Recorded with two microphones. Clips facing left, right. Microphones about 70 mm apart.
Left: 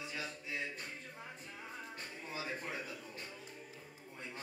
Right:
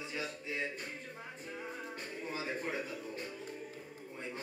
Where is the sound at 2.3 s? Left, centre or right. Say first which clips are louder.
Right 3 dB; right.